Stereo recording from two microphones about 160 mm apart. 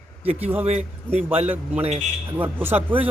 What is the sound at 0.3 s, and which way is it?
A man's voice, 10° right (ahead or behind).